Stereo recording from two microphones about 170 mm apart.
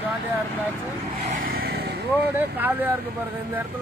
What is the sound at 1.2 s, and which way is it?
Vehicle, 55° right (ahead or behind).